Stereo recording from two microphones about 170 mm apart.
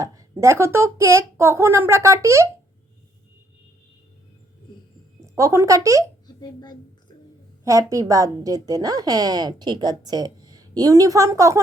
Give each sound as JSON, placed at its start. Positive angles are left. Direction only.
{"t": 0.0, "sound": "speech", "side_deg": -20}
{"t": 5.2, "sound": "speech", "side_deg": -15}
{"t": 6.2, "sound": "a sound", "side_deg": 25}
{"t": 7.6, "sound": "a woman's voice", "side_deg": -20}